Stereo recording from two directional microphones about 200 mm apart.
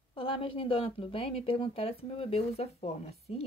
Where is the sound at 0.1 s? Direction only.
25° left (ahead or behind).